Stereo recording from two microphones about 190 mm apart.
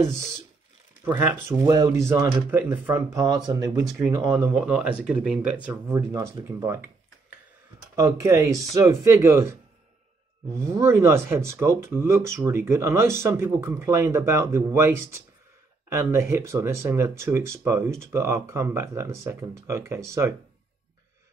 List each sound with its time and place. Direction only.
1.0 s speech: 15° right (ahead or behind)
7.9 s speech: 15° right (ahead or behind)